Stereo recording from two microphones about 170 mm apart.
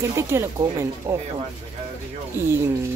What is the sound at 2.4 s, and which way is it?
Speech, 15° right (ahead or behind).